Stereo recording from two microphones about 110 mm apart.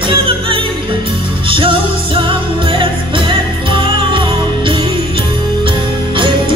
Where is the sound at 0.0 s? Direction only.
50° right (ahead or behind).